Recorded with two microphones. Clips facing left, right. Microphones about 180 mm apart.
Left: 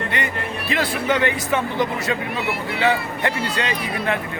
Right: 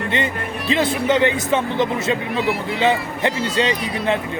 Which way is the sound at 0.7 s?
20° right (ahead or behind).